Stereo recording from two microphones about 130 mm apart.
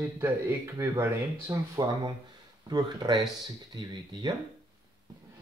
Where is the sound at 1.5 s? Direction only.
35° right (ahead or behind).